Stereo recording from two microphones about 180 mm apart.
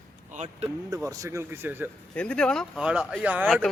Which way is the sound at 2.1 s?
5° left (ahead or behind).